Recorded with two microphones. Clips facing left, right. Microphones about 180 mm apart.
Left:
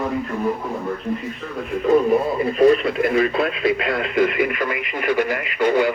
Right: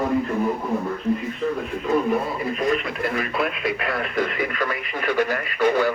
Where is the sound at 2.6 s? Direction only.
30° left (ahead or behind).